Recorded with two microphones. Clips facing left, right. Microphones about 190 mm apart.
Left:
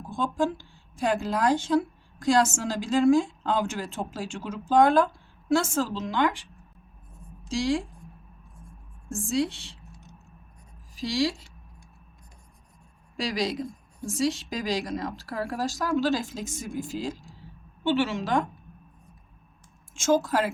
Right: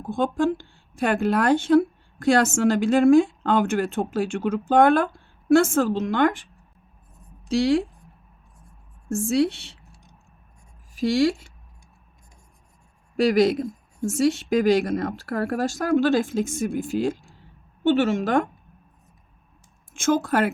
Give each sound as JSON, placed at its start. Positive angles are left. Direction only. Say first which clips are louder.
{"t": 0.0, "sound": "speech", "louder": "right 5 dB", "side_deg": -60}
{"t": 9.3, "sound": "speech", "louder": "right 5 dB", "side_deg": -65}
{"t": 10.9, "sound": "speech", "louder": "right 7 dB", "side_deg": -55}
{"t": 13.1, "sound": "a woman's voice", "louder": "right 10 dB", "side_deg": -55}
{"t": 19.9, "sound": "speech", "louder": "right 2 dB", "side_deg": -55}